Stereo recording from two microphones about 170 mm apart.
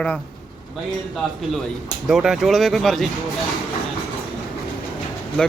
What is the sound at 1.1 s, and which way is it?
Speech, centre (ahead or behind).